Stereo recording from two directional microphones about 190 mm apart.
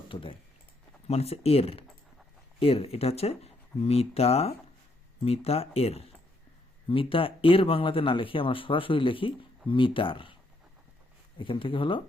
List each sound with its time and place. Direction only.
0.1 s speech: 30° left (ahead or behind)
11.3 s speech: 25° left (ahead or behind)